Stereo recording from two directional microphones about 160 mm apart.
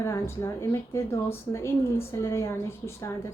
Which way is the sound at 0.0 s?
20° left (ahead or behind).